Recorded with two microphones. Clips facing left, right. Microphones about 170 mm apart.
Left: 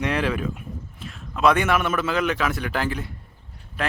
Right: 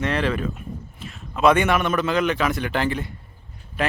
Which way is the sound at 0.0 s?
10° left (ahead or behind).